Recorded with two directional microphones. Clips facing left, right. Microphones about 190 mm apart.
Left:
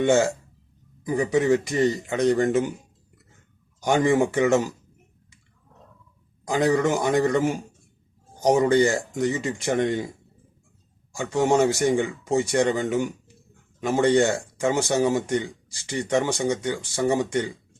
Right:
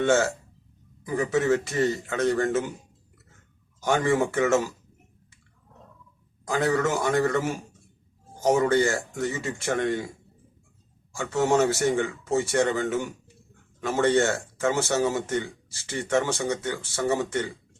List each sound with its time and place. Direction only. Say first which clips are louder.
0.0 s speech: left 2 dB; 15° left (ahead or behind)
3.8 s speech: left 3 dB; 15° left (ahead or behind)
6.4 s speech: left 3 dB; 15° left (ahead or behind)
11.1 s speech: left 2 dB; 15° left (ahead or behind)